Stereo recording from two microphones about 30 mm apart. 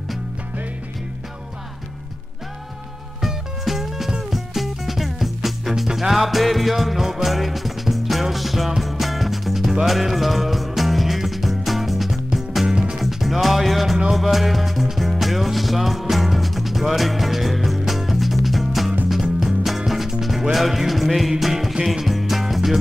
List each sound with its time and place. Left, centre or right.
3.2 s music: centre
7.0 s music: centre
7.2 s music: centre
12.6 s music: right
13.0 s music: centre